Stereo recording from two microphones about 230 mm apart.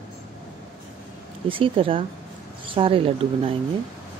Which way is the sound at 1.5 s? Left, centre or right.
Right.